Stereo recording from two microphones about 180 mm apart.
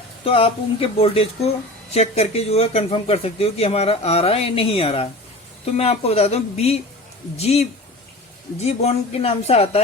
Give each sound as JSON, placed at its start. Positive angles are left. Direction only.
{"t": 0.3, "sound": "speech", "side_deg": 30}